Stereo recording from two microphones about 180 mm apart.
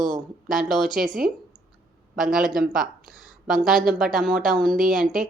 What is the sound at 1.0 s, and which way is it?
Speech, 50° right (ahead or behind).